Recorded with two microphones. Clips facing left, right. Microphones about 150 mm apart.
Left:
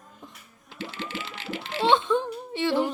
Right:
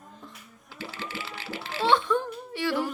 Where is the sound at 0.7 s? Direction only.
20° left (ahead or behind).